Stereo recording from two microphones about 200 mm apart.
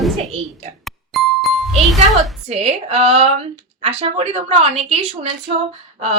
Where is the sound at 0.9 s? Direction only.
Centre (ahead or behind).